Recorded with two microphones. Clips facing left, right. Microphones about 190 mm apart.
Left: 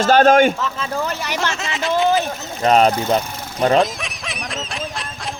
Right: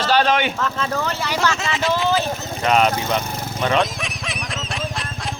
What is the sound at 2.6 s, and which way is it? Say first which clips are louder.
Speech: left 4 dB; 35° left (ahead or behind).